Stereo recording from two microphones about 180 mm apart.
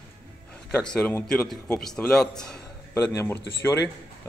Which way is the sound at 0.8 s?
5° left (ahead or behind).